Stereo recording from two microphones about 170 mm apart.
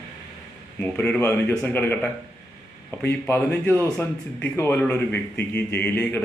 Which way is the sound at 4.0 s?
10° left (ahead or behind).